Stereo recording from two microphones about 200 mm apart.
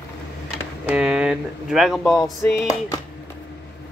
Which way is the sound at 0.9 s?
5° right (ahead or behind).